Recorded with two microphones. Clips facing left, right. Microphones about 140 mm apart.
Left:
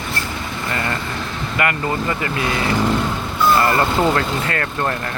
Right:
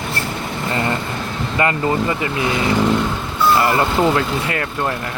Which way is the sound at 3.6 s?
15° right (ahead or behind).